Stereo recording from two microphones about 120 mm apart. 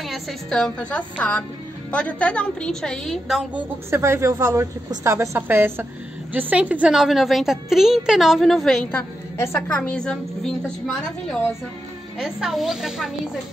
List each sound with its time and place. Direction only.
0.0 s a woman's voice: centre (ahead or behind)
3.5 s a woman's voice: 20° right (ahead or behind); by 8.8 s centre (ahead or behind)
8.9 s a woman's voice: 20° left (ahead or behind); by 13.3 s 5° right (ahead or behind)